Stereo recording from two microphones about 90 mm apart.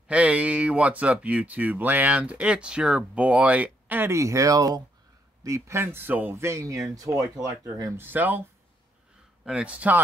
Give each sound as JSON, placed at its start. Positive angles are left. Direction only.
{"t": 0.1, "sound": "speech", "side_deg": -15}
{"t": 4.1, "sound": "speech", "side_deg": -35}
{"t": 9.4, "sound": "speech", "side_deg": -10}